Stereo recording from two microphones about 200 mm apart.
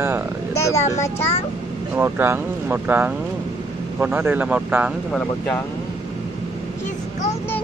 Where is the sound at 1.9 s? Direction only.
10° right (ahead or behind).